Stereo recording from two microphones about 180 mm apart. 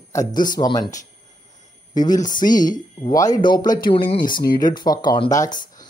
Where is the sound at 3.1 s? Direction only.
20° left (ahead or behind).